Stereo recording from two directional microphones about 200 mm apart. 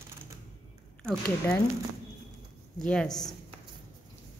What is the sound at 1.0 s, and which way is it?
Speech, 5° left (ahead or behind).